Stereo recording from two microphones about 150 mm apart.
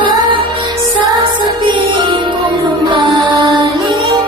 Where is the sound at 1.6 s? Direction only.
30° right (ahead or behind).